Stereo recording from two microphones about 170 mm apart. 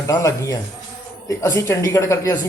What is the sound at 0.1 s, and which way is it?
A man's voice, 15° left (ahead or behind).